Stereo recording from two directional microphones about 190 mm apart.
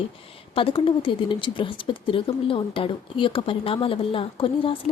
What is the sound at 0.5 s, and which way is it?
Speech, 30° left (ahead or behind).